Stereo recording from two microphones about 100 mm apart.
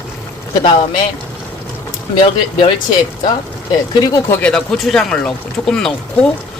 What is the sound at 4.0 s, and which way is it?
Speech, 35° left (ahead or behind).